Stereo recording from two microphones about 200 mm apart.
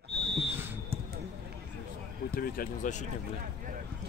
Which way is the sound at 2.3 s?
45° left (ahead or behind).